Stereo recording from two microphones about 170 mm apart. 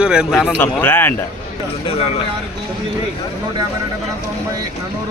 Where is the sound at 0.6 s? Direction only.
10° left (ahead or behind).